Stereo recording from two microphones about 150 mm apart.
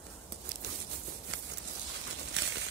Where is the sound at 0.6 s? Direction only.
90° right.